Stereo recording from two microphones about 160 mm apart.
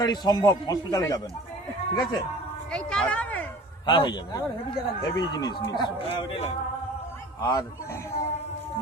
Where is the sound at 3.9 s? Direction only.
30° left (ahead or behind).